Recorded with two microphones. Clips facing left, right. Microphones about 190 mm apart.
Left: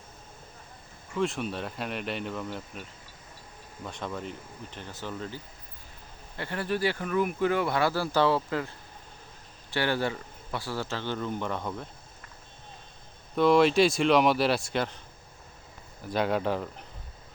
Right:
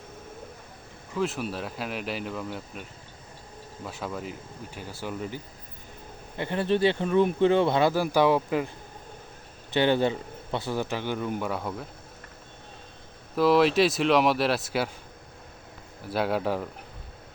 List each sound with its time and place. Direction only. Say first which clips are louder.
1.1 s speech: right 1 dB; centre (ahead or behind)
3.8 s speech: right 1 dB; 5° right (ahead or behind)
9.7 s speech: right 5 dB; 20° right (ahead or behind)
13.3 s speech: even; centre (ahead or behind)
16.0 s speech: right 1 dB; 5° right (ahead or behind)